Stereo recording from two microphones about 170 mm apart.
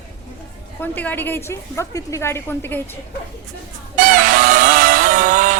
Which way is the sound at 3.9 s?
55° right (ahead or behind).